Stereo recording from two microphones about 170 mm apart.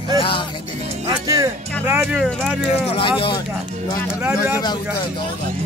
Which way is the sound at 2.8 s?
35° left (ahead or behind).